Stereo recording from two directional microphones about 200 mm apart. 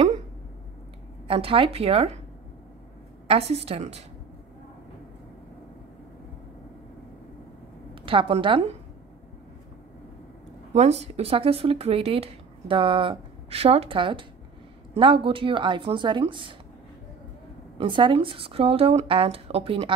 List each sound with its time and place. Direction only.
1.2 s speech: 30° right (ahead or behind)
3.3 s a woman's voice: 30° right (ahead or behind)
7.9 s a woman's voice: 25° right (ahead or behind)
10.7 s speech: 35° right (ahead or behind)
17.7 s speech: 25° right (ahead or behind)